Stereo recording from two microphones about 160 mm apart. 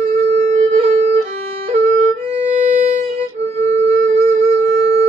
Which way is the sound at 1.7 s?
40° right (ahead or behind).